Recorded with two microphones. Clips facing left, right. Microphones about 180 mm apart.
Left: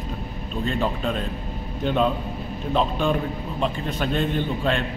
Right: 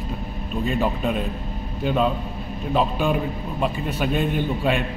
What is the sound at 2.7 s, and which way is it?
A man's voice, 5° right (ahead or behind).